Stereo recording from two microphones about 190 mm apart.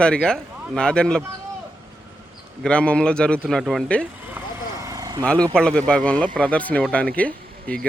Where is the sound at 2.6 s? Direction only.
5° left (ahead or behind).